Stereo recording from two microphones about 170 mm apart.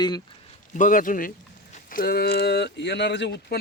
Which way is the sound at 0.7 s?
50° left (ahead or behind).